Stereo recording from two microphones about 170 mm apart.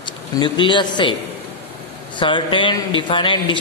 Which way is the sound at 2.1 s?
30° left (ahead or behind).